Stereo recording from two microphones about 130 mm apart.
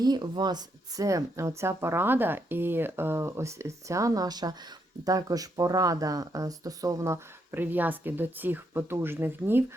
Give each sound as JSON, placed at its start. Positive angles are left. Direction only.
{"t": 0.0, "sound": "speech", "side_deg": -35}